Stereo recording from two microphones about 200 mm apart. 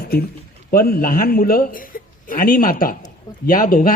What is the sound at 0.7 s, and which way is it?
A man's voice, 45° left (ahead or behind).